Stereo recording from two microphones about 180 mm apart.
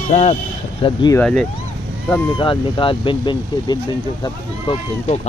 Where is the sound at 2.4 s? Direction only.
25° left (ahead or behind).